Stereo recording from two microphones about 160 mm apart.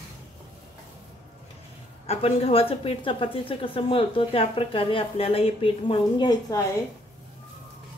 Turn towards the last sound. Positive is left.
turn(degrees=25)  # may be behind; listen again after turning